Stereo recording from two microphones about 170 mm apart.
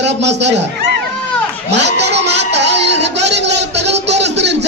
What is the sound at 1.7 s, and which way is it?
Music, 90° right.